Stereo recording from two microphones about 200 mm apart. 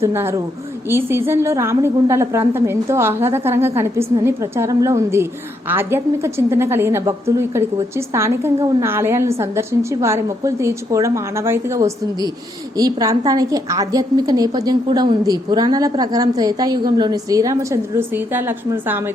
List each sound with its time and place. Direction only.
0.0 s a woman's voice: 10° right (ahead or behind)